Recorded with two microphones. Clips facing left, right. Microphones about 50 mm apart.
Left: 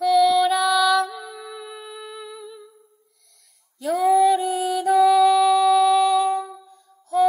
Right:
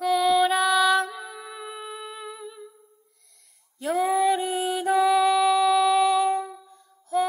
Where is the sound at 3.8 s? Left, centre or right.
Right.